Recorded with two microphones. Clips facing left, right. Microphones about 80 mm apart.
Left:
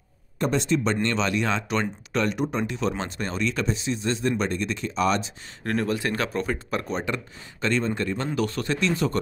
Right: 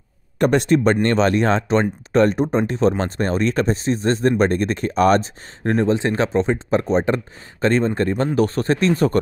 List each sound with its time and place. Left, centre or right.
0.4 s speech: right
5.6 s speech: right